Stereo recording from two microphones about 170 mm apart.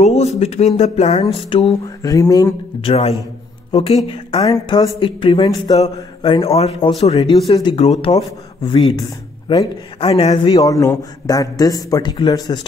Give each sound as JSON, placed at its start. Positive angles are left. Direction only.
{"t": 0.0, "sound": "speech", "side_deg": 40}
{"t": 2.0, "sound": "a man's voice", "side_deg": 20}
{"t": 2.8, "sound": "a man's voice", "side_deg": 35}
{"t": 10.5, "sound": "a man's voice", "side_deg": 20}